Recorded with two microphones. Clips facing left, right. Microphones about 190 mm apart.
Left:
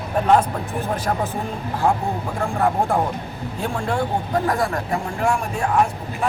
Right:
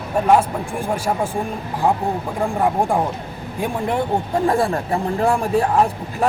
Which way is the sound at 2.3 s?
15° right (ahead or behind).